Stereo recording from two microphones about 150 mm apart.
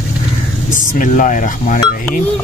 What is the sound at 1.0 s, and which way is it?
Speech, 60° left (ahead or behind).